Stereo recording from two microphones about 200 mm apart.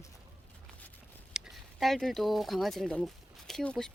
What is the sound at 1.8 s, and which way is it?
Speech, centre (ahead or behind).